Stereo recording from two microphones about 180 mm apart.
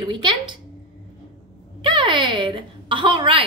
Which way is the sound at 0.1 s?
25° right (ahead or behind).